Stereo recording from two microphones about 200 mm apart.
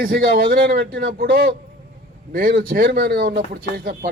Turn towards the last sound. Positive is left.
turn(degrees=-45)  # may be behind; listen again after turning